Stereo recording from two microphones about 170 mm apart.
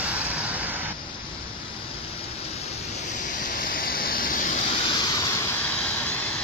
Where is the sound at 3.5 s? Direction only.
55° left (ahead or behind).